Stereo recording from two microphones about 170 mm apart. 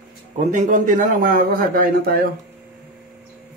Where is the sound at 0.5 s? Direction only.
45° right (ahead or behind).